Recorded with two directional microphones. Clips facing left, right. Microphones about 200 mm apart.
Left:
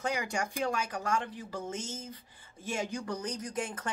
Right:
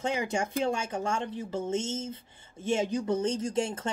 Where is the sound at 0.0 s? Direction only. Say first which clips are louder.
Right 4 dB; 25° right (ahead or behind).